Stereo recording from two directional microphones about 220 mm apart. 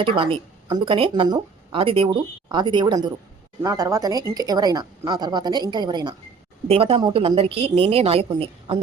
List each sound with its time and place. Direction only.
0.0 s a woman's voice: 25° right (ahead or behind)